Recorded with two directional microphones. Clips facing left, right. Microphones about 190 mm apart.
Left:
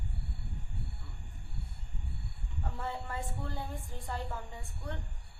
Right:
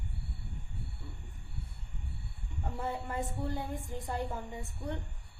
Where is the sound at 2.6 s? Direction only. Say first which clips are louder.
Right 3 dB; 20° right (ahead or behind).